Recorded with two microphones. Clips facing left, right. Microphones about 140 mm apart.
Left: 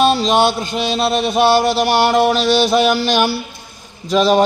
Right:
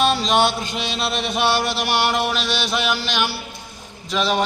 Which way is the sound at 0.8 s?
35° left (ahead or behind).